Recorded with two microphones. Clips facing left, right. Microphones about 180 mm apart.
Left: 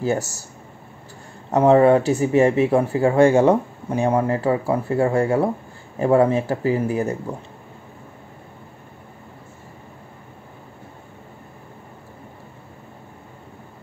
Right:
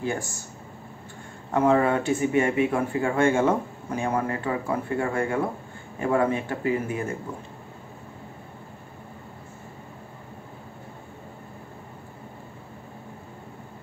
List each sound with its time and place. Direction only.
1.5 s speech: 30° left (ahead or behind)